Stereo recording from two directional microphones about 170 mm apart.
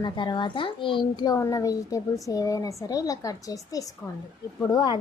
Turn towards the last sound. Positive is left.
turn(degrees=25)  # may be behind; listen again after turning